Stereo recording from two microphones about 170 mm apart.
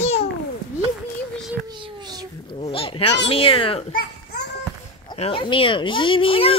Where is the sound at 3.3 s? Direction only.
35° left (ahead or behind).